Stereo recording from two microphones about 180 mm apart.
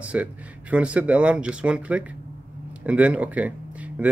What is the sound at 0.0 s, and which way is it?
Speech, 5° right (ahead or behind).